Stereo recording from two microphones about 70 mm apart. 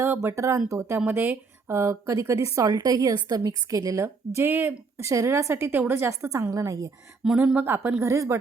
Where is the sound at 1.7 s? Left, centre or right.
Right.